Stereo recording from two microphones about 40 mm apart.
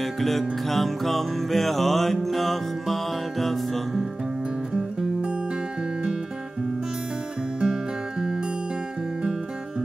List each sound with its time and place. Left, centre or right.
0.0 s music: centre
7.6 s music: centre